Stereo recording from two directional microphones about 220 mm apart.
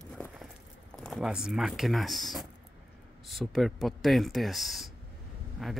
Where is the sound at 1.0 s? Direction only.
Centre (ahead or behind).